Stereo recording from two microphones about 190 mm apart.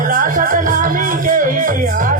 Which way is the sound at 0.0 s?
45° right (ahead or behind).